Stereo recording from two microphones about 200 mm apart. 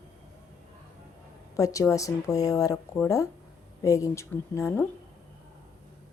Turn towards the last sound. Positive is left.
turn(degrees=10)  # may be behind; listen again after turning